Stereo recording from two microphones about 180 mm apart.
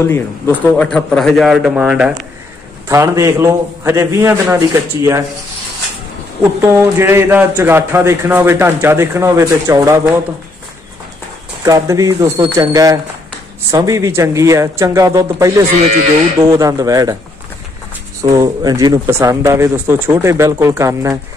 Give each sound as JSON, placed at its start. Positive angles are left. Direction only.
{"t": 0.0, "sound": "a man's voice", "side_deg": 10}
{"t": 2.9, "sound": "a man's voice", "side_deg": -15}
{"t": 6.6, "sound": "a man's voice", "side_deg": -15}
{"t": 11.6, "sound": "a man's voice", "side_deg": -20}
{"t": 18.2, "sound": "a man's voice", "side_deg": -20}